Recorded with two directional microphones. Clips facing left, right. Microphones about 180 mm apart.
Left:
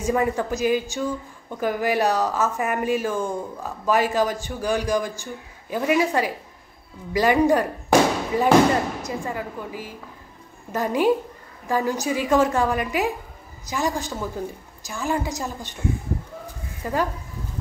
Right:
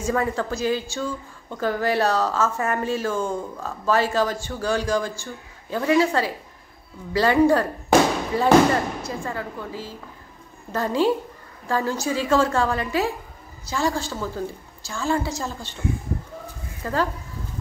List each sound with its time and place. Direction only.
0.0 s a woman's voice: 15° left (ahead or behind)
16.8 s a woman's voice: 15° left (ahead or behind)